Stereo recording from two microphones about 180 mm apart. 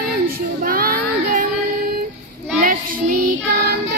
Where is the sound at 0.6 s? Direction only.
55° right (ahead or behind).